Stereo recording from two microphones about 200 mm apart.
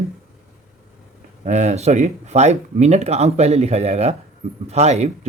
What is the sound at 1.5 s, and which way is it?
Speech, 35° right (ahead or behind).